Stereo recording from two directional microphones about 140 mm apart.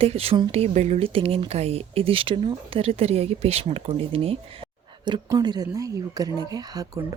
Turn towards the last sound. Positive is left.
turn(degrees=-30)  # may be behind; listen again after turning